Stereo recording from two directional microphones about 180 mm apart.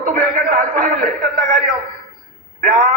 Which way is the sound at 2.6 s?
50° right (ahead or behind).